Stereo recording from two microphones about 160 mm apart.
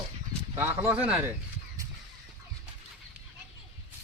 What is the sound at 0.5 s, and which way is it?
Speech, 15° right (ahead or behind).